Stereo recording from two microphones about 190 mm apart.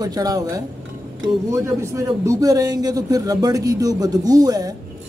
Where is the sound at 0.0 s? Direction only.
20° right (ahead or behind).